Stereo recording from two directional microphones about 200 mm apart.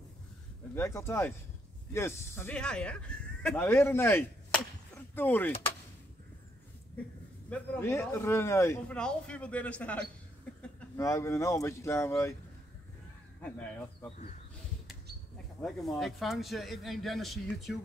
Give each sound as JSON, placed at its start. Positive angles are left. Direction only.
{"t": 0.7, "sound": "a man's voice", "side_deg": 15}
{"t": 7.4, "sound": "a man's voice", "side_deg": 10}
{"t": 13.4, "sound": "speech", "side_deg": 5}
{"t": 15.6, "sound": "speech", "side_deg": 0}